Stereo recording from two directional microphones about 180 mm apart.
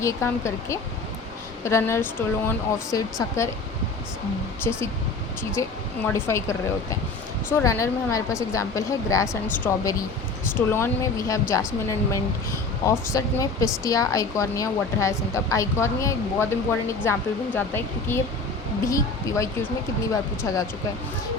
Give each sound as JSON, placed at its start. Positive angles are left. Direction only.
{"t": 0.0, "sound": "speech", "side_deg": 15}
{"t": 5.6, "sound": "speech", "side_deg": 15}